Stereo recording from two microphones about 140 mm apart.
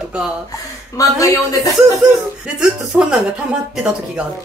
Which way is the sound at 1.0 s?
25° left (ahead or behind).